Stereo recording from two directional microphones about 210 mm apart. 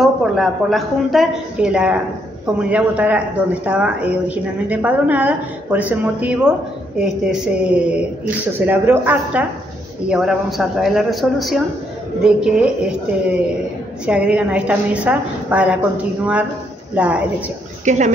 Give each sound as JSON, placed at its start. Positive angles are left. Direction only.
{"t": 0.0, "sound": "a woman's voice", "side_deg": 0}
{"t": 16.9, "sound": "a woman's voice", "side_deg": -5}
{"t": 17.8, "sound": "speech", "side_deg": -35}